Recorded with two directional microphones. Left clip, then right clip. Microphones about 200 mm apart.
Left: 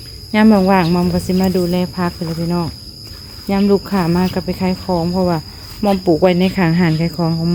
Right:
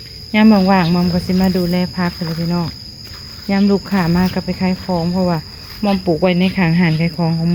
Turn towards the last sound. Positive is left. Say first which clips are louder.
# left 1 dB
turn(degrees=15)  # may be behind; listen again after turning